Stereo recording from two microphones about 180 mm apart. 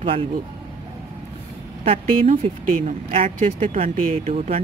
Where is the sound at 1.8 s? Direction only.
35° right (ahead or behind).